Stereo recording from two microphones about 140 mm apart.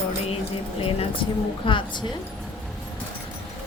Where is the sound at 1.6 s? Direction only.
35° left (ahead or behind).